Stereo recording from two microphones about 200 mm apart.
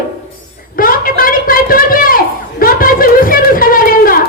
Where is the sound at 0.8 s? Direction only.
45° left (ahead or behind).